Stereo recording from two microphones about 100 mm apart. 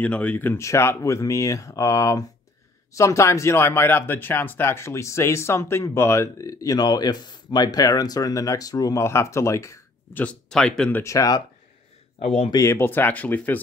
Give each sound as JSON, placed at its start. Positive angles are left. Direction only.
{"t": 0.0, "sound": "speech", "side_deg": 15}
{"t": 0.6, "sound": "speech", "side_deg": 30}
{"t": 10.1, "sound": "speech", "side_deg": 10}
{"t": 11.1, "sound": "speech", "side_deg": 35}
{"t": 12.2, "sound": "speech", "side_deg": 90}
{"t": 12.5, "sound": "speech", "side_deg": 25}